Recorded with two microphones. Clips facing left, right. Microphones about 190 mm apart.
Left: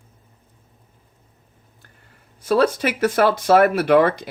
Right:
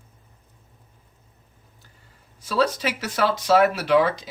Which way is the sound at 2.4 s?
55° left (ahead or behind).